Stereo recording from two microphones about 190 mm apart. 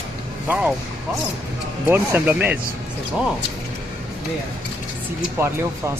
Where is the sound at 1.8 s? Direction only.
10° right (ahead or behind).